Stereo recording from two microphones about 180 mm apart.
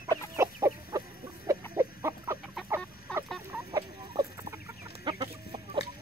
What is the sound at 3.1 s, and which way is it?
Chicken, 5° left (ahead or behind).